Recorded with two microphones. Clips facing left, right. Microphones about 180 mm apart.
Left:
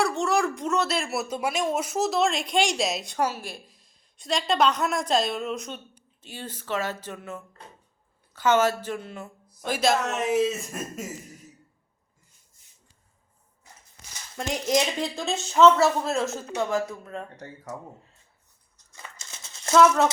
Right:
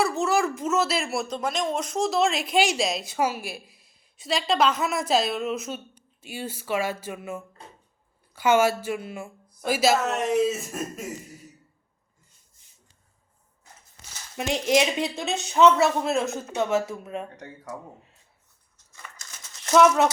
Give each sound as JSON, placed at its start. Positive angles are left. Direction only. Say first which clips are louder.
{"t": 0.0, "sound": "a woman's voice", "louder": "right 1 dB", "side_deg": 0}
{"t": 14.3, "sound": "a woman's voice", "louder": "right 2 dB", "side_deg": -20}
{"t": 19.1, "sound": "a sound", "louder": "left 1 dB", "side_deg": 25}